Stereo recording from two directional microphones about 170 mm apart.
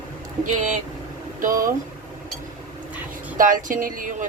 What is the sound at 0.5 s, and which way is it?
Speech, 45° right (ahead or behind).